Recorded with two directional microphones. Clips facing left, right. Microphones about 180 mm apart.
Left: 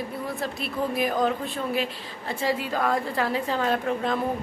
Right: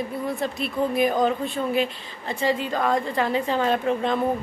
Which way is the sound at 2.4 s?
5° left (ahead or behind).